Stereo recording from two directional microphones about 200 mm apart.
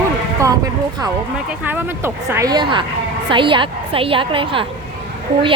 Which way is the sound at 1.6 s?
10° right (ahead or behind).